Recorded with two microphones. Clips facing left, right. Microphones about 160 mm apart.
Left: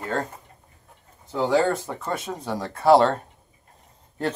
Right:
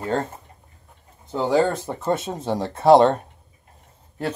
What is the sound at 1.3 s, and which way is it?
Speech, 20° right (ahead or behind).